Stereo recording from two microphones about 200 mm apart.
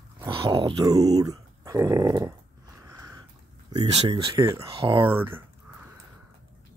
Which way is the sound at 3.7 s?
20° right (ahead or behind).